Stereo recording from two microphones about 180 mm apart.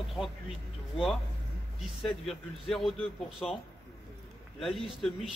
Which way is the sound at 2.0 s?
Centre (ahead or behind).